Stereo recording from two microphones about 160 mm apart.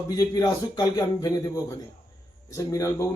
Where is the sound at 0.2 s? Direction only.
25° left (ahead or behind).